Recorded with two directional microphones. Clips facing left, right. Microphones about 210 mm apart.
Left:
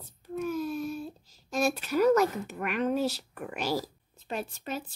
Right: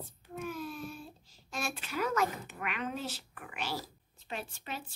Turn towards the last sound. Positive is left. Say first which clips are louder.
# left 7 dB
turn(degrees=40)  # may be behind; listen again after turning